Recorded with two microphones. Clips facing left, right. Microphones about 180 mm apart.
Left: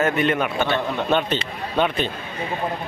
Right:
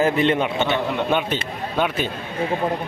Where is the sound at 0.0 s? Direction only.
25° right (ahead or behind).